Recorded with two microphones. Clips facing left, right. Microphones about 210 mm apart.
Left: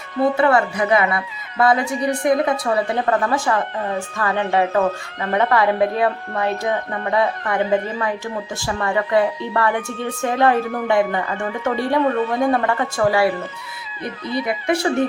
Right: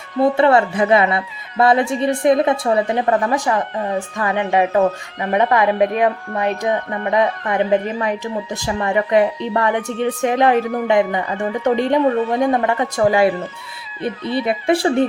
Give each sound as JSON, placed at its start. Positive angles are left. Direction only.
{"t": 0.3, "sound": "speech", "side_deg": -25}
{"t": 14.4, "sound": "speech", "side_deg": -30}